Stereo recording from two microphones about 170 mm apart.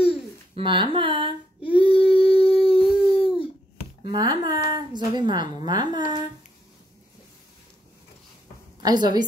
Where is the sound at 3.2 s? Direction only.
5° right (ahead or behind).